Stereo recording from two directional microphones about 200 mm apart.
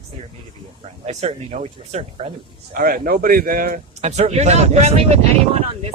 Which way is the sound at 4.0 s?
35° right (ahead or behind).